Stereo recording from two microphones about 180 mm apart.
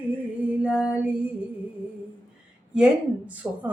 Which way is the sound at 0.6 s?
5° right (ahead or behind).